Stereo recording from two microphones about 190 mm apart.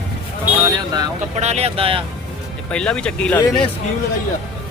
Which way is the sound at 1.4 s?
35° right (ahead or behind).